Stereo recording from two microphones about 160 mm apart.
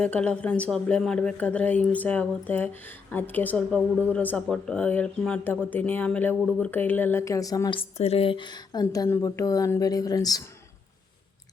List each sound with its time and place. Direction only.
0.0 s a woman's voice: 5° left (ahead or behind); by 7.8 s 25° left (ahead or behind)
7.8 s a woman's voice: 40° left (ahead or behind)